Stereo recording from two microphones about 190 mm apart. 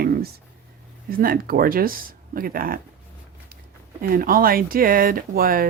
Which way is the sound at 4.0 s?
50° right (ahead or behind).